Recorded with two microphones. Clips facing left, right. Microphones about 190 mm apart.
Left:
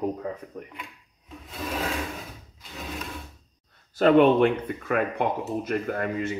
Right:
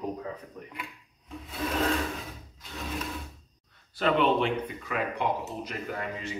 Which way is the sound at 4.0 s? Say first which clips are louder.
Left 7 dB; 45° left (ahead or behind).